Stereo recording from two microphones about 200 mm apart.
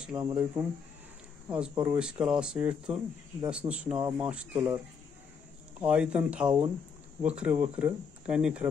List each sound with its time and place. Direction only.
0.1 s speech: 20° right (ahead or behind)
1.5 s speech: 10° right (ahead or behind)
5.8 s speech: 5° right (ahead or behind)